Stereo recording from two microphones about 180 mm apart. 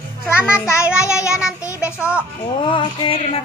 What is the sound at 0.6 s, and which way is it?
Child singing, 15° left (ahead or behind).